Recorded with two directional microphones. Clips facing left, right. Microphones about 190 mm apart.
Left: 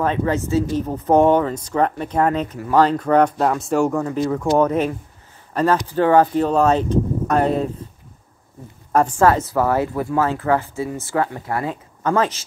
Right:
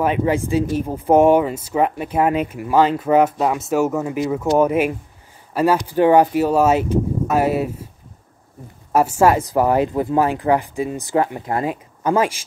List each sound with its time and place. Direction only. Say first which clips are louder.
0.0 s speech: right 2 dB; 15° right (ahead or behind)
8.9 s speech: right 1 dB; 10° right (ahead or behind)